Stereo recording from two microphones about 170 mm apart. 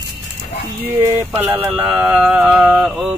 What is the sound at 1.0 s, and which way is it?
Speech, 10° right (ahead or behind).